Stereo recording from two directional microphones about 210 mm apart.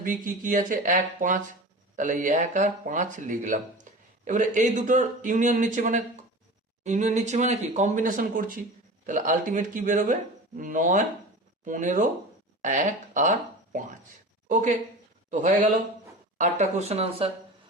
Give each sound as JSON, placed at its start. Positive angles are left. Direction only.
{"t": 0.0, "sound": "speech", "side_deg": -40}